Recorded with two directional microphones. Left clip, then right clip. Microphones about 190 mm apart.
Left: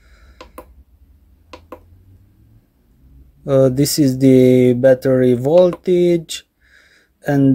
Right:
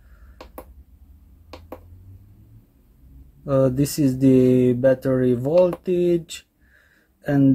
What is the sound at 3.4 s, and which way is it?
Speech, 30° left (ahead or behind).